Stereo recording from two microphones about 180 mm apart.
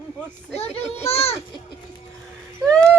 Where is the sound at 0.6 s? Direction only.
35° left (ahead or behind).